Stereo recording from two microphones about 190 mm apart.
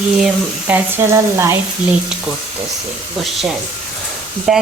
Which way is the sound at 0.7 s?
15° right (ahead or behind).